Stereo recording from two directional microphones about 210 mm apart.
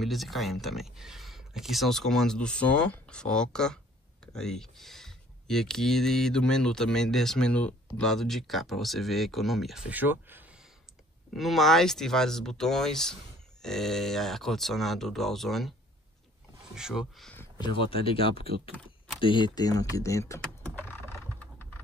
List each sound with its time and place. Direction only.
0.0 s speech: centre (ahead or behind)
16.7 s speech: centre (ahead or behind)
17.6 s speech: 25° left (ahead or behind)
20.8 s computer keyboard: 10° left (ahead or behind)